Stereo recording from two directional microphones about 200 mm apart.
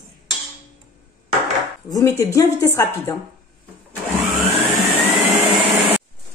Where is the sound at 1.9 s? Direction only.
15° left (ahead or behind).